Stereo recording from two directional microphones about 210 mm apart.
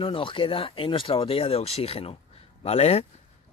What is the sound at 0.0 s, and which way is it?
Speech, 25° left (ahead or behind).